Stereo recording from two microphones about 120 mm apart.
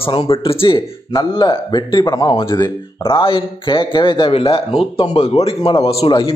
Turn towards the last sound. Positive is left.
turn(degrees=50)  # may be behind; listen again after turning